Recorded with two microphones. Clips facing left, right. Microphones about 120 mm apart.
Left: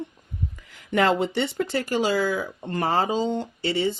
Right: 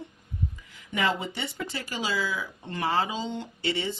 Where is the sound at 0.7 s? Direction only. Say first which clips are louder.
Left 7 dB; 65° left (ahead or behind).